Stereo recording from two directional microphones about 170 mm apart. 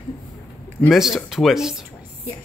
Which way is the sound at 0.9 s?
Centre (ahead or behind).